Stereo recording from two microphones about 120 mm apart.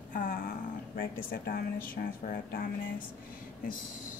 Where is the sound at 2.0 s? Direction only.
90° left.